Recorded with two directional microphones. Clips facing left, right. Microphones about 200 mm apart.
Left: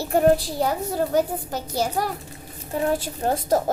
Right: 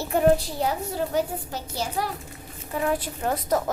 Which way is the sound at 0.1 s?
40° left (ahead or behind).